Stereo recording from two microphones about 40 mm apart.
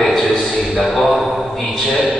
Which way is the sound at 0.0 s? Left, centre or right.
Centre.